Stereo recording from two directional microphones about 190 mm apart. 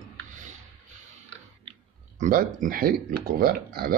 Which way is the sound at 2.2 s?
45° right (ahead or behind).